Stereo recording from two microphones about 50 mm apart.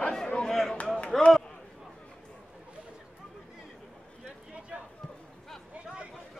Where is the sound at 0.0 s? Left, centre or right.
Centre.